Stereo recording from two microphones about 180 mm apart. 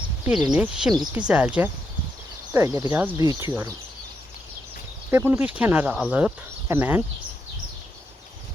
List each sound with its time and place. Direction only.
0.5 s speech: 5° right (ahead or behind)
5.1 s speech: 10° right (ahead or behind)